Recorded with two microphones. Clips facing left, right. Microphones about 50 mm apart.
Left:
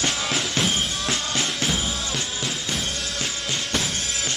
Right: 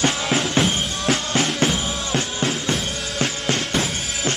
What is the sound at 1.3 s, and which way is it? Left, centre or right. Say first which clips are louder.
Music: right 6 dB; right.